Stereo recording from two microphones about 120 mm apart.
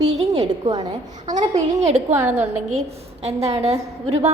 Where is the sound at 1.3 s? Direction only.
75° right (ahead or behind).